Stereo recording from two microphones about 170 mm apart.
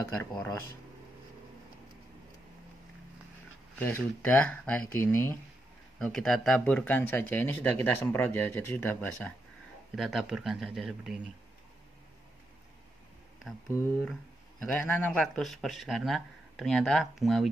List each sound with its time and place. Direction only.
0.2 s speech: 20° left (ahead or behind)
3.8 s speech: 10° left (ahead or behind)
5.9 s speech: centre (ahead or behind)
9.9 s speech: centre (ahead or behind)
13.7 s speech: 15° left (ahead or behind); by 17.5 s centre (ahead or behind)